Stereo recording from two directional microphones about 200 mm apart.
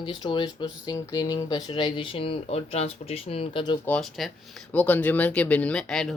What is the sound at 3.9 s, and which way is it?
Speech, centre (ahead or behind).